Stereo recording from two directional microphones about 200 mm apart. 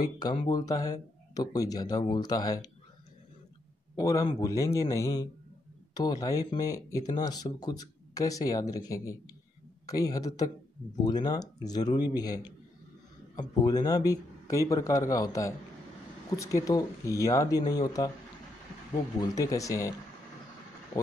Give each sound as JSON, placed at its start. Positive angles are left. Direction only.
{"t": 0.0, "sound": "speech", "side_deg": 20}
{"t": 3.9, "sound": "speech", "side_deg": 15}
{"t": 19.1, "sound": "speech", "side_deg": 15}